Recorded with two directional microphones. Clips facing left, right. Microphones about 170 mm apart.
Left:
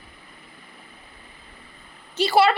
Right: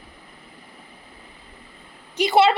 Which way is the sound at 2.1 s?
15° right (ahead or behind).